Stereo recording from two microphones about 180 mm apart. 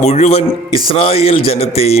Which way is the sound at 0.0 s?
40° left (ahead or behind).